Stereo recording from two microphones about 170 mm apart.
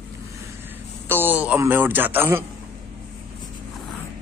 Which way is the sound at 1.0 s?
10° right (ahead or behind).